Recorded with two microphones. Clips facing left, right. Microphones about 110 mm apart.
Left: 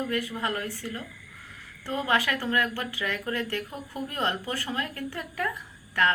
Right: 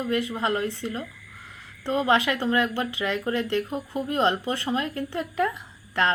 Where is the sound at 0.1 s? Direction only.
20° right (ahead or behind).